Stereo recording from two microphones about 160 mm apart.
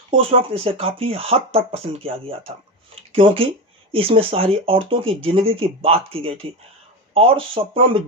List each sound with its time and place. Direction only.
0.1 s speech: 35° right (ahead or behind)
2.9 s a sound: 35° right (ahead or behind)
3.9 s speech: 35° right (ahead or behind)